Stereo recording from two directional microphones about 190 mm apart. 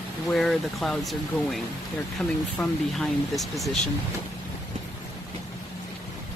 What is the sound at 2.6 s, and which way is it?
Speech, centre (ahead or behind).